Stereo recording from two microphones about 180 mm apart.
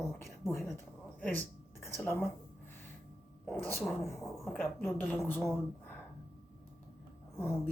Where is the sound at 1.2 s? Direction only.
10° left (ahead or behind).